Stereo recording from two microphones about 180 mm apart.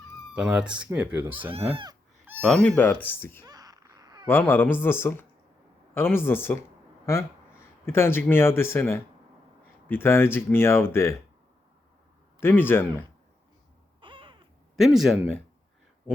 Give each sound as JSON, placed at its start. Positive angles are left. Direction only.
{"t": 0.3, "sound": "speech", "side_deg": -5}
{"t": 1.7, "sound": "speech", "side_deg": -25}
{"t": 2.4, "sound": "speech", "side_deg": 5}
{"t": 3.4, "sound": "baby cry", "side_deg": -20}
{"t": 4.3, "sound": "speech", "side_deg": 10}
{"t": 12.4, "sound": "speech", "side_deg": 10}
{"t": 14.0, "sound": "owl", "side_deg": -30}
{"t": 14.8, "sound": "speech", "side_deg": 0}